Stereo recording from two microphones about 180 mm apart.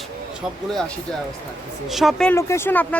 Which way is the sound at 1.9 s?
Centre (ahead or behind).